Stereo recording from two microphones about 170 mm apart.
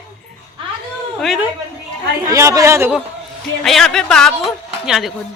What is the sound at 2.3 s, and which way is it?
Speech, 20° right (ahead or behind).